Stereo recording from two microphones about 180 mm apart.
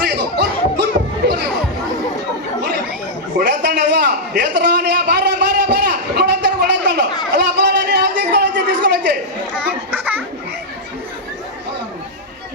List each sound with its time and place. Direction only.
0.0 s music: 70° right (ahead or behind)
3.3 s a sound: 70° right (ahead or behind)
9.6 s children playing: 10° right (ahead or behind)